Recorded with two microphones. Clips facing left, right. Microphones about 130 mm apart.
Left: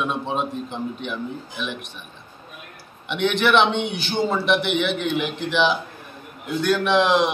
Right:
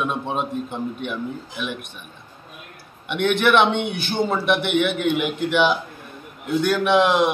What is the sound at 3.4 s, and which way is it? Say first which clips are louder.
Speech: right 1 dB; 5° right (ahead or behind).